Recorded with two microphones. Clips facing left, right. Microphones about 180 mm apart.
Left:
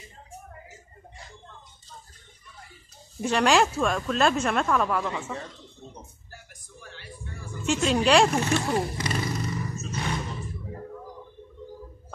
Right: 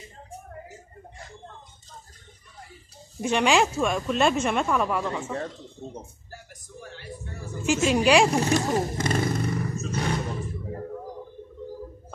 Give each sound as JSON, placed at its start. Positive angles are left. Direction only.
{"t": 3.2, "sound": "speech", "side_deg": -5}
{"t": 6.8, "sound": "a sound", "side_deg": -40}
{"t": 7.6, "sound": "speech", "side_deg": -5}
{"t": 8.3, "sound": "roar", "side_deg": -35}